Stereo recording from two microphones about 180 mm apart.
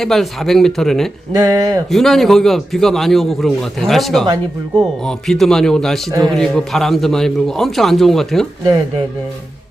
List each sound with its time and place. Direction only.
0.0 s a man's voice: centre (ahead or behind)
1.4 s speech: 20° right (ahead or behind)
1.9 s a man's voice: centre (ahead or behind)
6.1 s a man's voice: 15° right (ahead or behind)
6.3 s a man's voice: 5° left (ahead or behind)